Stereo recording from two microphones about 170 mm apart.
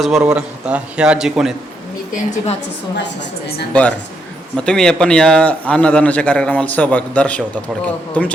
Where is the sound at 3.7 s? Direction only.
10° left (ahead or behind).